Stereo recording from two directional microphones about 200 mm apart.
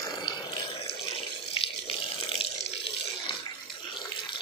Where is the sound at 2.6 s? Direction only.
30° left (ahead or behind).